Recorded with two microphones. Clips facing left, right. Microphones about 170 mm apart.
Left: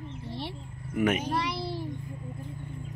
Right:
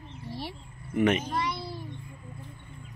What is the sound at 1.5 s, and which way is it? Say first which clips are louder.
Child singing: left 4 dB; 30° left (ahead or behind).